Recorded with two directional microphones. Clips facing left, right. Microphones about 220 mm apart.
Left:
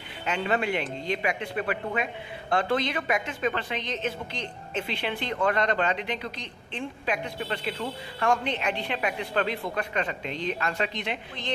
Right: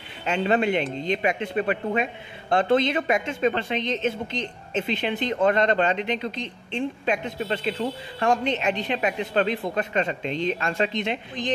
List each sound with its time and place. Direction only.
0.2 s a woman's voice: 30° right (ahead or behind)